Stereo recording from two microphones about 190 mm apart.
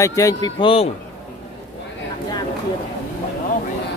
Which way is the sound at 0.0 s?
15° left (ahead or behind).